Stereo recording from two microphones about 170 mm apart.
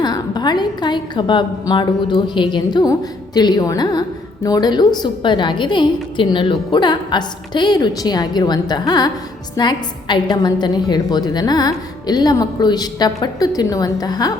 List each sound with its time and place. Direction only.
0.0 s a woman's voice: 25° left (ahead or behind)